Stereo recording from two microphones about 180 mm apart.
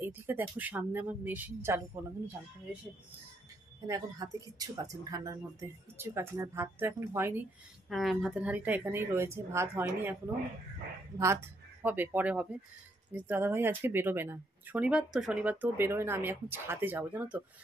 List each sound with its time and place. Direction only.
0.0 s speech: 10° right (ahead or behind)
3.8 s speech: 20° right (ahead or behind)
7.9 s speech: centre (ahead or behind)
11.8 s speech: 10° right (ahead or behind)